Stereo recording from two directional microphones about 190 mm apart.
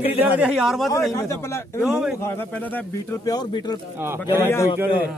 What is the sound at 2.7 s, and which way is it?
A man's voice, 20° left (ahead or behind).